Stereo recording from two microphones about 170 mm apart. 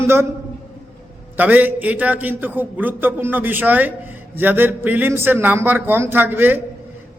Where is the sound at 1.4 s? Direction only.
10° right (ahead or behind).